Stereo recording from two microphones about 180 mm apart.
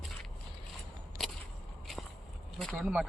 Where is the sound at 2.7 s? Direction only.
5° right (ahead or behind).